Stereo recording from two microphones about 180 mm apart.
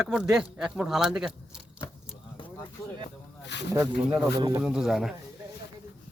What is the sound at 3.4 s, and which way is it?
Speech, 75° left (ahead or behind).